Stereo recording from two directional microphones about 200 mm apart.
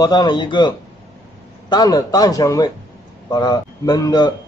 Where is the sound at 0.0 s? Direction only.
20° left (ahead or behind).